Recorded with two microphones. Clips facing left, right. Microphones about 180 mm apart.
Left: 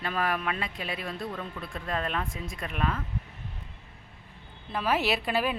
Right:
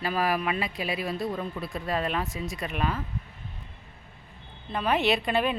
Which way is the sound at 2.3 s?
80° right.